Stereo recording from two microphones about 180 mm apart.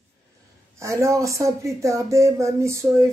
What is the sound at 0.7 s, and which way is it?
A woman's voice, 15° right (ahead or behind).